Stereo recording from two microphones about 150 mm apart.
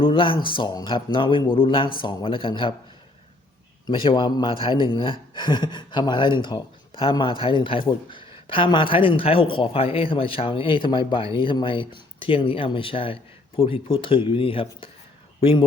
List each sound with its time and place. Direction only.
0.0 s speech: 35° left (ahead or behind)
3.8 s speech: 30° left (ahead or behind)